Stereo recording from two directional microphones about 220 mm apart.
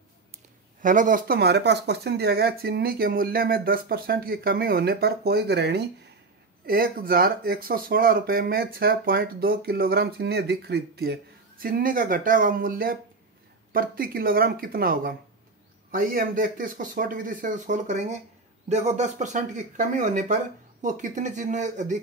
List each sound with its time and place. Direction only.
0.8 s speech: 35° right (ahead or behind)